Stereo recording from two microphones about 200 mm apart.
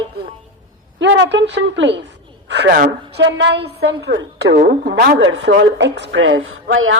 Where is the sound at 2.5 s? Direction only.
55° right (ahead or behind); by 6.9 s 70° right (ahead or behind).